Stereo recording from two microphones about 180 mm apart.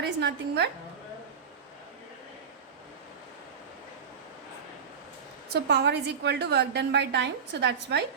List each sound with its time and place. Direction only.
0.0 s a woman's voice: 70° right (ahead or behind)
5.5 s a woman's voice: 70° right (ahead or behind)